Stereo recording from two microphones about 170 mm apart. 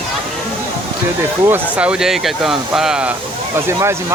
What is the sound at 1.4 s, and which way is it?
Speech, 10° right (ahead or behind).